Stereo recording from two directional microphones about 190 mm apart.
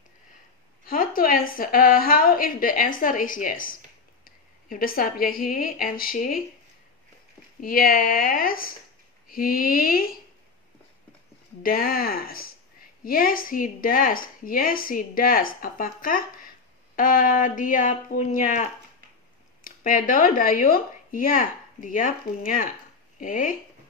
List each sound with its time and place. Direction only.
0.8 s a woman's voice: 50° left (ahead or behind)
4.2 s a sound: 50° left (ahead or behind)
5.3 s a woman's voice: 50° left (ahead or behind)
7.6 s a woman's voice: 50° left (ahead or behind)
11.6 s a woman's voice: 50° left (ahead or behind)